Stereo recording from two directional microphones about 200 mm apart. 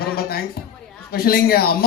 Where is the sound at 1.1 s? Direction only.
50° left (ahead or behind).